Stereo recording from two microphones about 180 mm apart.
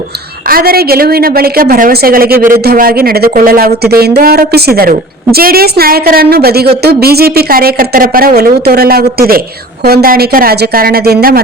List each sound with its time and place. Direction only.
0.4 s speech: 55° right (ahead or behind)